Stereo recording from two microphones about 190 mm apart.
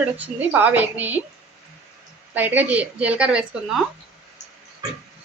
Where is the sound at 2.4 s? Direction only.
10° right (ahead or behind).